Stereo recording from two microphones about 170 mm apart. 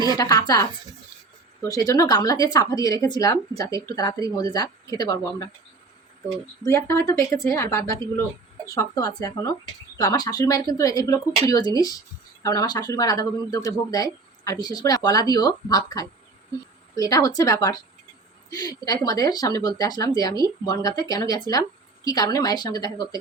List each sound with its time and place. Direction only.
0.2 s speech: 20° left (ahead or behind)
6.7 s speech: 15° left (ahead or behind)